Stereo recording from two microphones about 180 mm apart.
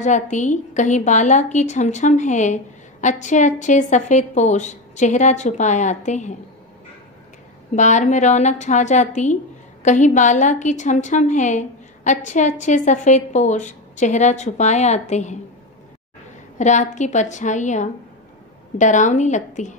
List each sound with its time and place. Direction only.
0.0 s a woman's voice: 40° left (ahead or behind)
7.7 s a woman's voice: 40° left (ahead or behind)
16.5 s a woman's voice: 40° left (ahead or behind)